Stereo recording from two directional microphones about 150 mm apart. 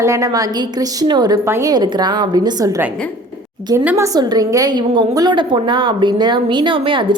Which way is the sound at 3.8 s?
15° right (ahead or behind).